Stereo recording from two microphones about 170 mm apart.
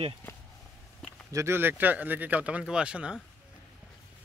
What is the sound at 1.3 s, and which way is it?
Speech, 15° right (ahead or behind).